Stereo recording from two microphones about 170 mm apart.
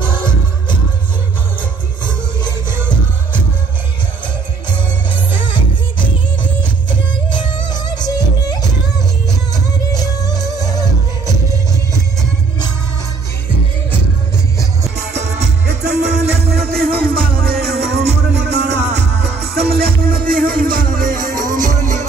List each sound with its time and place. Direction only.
6.9 s music: 25° left (ahead or behind)
9.9 s music: 25° left (ahead or behind)
15.0 s music: 80° right; by 22.0 s 45° right (ahead or behind)